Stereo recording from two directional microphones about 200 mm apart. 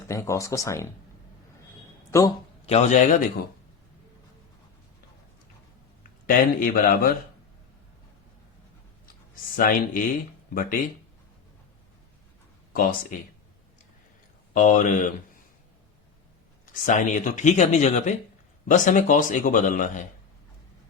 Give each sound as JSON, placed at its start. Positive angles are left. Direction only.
{"t": 0.1, "sound": "speech", "side_deg": 15}
{"t": 2.0, "sound": "a man's voice", "side_deg": 15}
{"t": 2.6, "sound": "speech", "side_deg": 35}
{"t": 6.0, "sound": "speech", "side_deg": 45}
{"t": 9.6, "sound": "speech", "side_deg": 45}
{"t": 12.7, "sound": "speech", "side_deg": 45}
{"t": 14.5, "sound": "speech", "side_deg": 40}
{"t": 16.8, "sound": "speech", "side_deg": 40}